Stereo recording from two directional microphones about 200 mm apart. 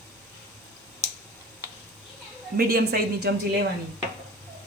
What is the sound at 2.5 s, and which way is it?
Speech, 50° right (ahead or behind).